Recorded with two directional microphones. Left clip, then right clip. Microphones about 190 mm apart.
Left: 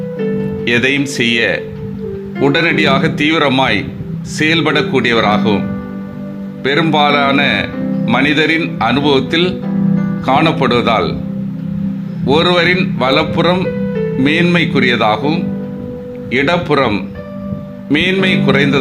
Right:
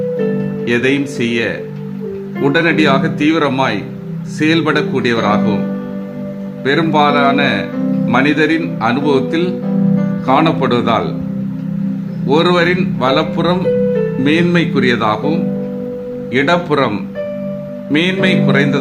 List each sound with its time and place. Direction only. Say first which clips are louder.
0.6 s speech: left 2 dB; 15° left (ahead or behind)
6.7 s speech: left 1 dB; 20° left (ahead or behind)
12.2 s speech: left 1 dB; 15° left (ahead or behind)